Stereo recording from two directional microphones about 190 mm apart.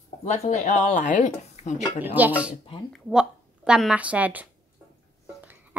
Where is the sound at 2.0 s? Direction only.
10° right (ahead or behind).